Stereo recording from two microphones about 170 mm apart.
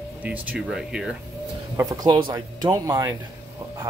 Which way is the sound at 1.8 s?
20° right (ahead or behind).